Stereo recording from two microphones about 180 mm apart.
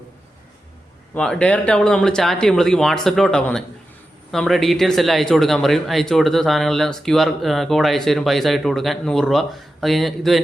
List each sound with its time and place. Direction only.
1.1 s speech: 5° left (ahead or behind)